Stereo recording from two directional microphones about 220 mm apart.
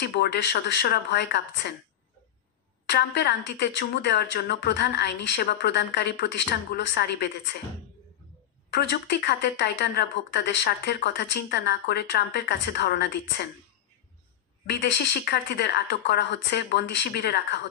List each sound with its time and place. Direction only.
0.0 s speech: 50° left (ahead or behind)
2.9 s speech: 50° left (ahead or behind)
8.6 s speech: 50° left (ahead or behind)
14.7 s speech: 50° left (ahead or behind)